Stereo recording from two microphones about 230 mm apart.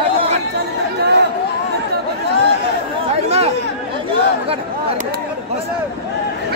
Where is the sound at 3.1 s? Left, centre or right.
Right.